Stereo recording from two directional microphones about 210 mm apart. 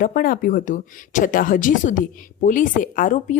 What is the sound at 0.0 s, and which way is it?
Speech, 45° left (ahead or behind).